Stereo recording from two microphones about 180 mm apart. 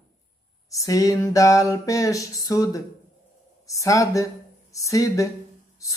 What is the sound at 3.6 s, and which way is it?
Speech, 20° left (ahead or behind).